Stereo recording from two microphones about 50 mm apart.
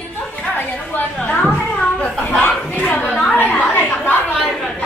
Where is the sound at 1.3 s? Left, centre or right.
Left.